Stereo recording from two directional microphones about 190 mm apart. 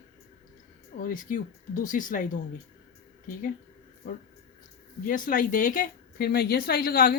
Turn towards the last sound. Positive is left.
turn(degrees=50)  # may be behind; listen again after turning